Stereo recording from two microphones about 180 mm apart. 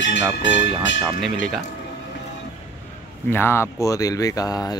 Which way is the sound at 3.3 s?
10° left (ahead or behind).